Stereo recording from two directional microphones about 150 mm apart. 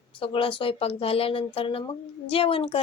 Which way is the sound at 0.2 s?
35° left (ahead or behind).